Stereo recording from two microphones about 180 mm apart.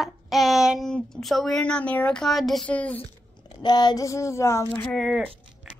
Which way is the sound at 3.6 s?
25° left (ahead or behind).